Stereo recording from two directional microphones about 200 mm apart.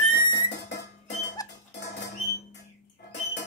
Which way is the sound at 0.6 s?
60° left (ahead or behind).